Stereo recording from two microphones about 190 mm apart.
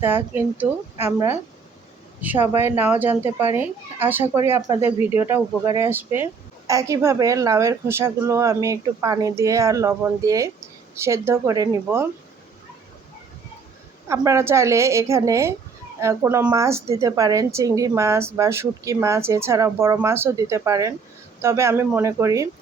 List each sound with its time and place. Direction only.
0.0 s a woman's voice: 10° right (ahead or behind)
14.1 s a woman's voice: 15° right (ahead or behind)